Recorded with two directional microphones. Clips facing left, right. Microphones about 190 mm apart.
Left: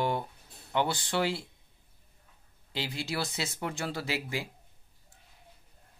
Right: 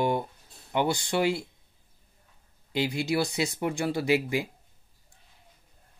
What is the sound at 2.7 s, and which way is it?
Speech, 15° right (ahead or behind).